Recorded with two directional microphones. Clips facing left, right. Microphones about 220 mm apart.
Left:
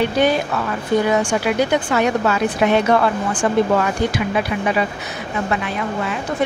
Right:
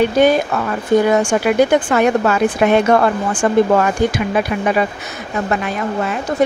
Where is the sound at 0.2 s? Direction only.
45° right (ahead or behind).